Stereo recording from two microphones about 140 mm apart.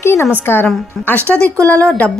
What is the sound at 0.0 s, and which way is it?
Speech, 15° left (ahead or behind).